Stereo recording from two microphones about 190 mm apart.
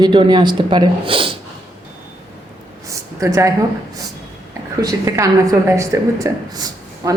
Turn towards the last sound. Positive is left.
turn(degrees=-20)  # may be behind; listen again after turning